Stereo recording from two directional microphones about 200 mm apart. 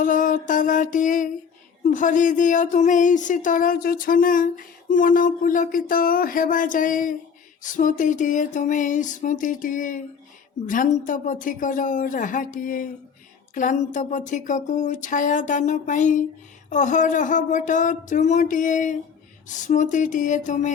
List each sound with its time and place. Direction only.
0.0 s speech: 40° left (ahead or behind)